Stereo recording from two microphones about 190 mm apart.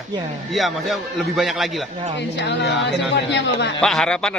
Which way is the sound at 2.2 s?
65° left (ahead or behind).